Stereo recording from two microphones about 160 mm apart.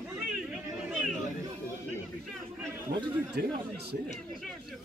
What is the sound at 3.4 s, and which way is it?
Speech, 80° right.